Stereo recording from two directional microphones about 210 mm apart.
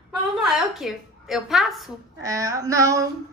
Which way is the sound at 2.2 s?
15° right (ahead or behind).